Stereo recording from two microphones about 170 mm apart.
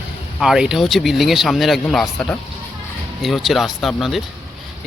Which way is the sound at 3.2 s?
Centre (ahead or behind).